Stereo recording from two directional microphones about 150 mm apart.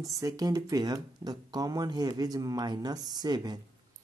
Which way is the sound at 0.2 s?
20° right (ahead or behind).